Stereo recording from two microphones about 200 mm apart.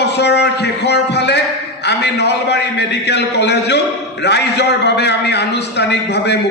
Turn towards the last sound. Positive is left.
turn(degrees=55)  # may be behind; listen again after turning